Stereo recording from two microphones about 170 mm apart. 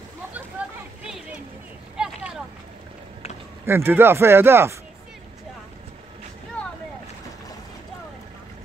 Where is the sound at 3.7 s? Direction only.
15° right (ahead or behind).